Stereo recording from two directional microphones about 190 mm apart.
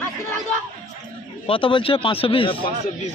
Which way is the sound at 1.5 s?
25° left (ahead or behind).